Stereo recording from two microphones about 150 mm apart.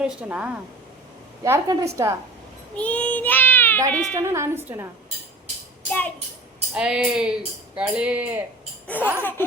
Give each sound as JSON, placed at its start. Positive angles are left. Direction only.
{"t": 0.0, "sound": "a woman's voice", "side_deg": -5}
{"t": 1.5, "sound": "a woman's voice", "side_deg": -20}
{"t": 2.7, "sound": "child singing", "side_deg": 10}
{"t": 4.2, "sound": "a woman's voice", "side_deg": -20}
{"t": 6.7, "sound": "a woman's voice", "side_deg": -5}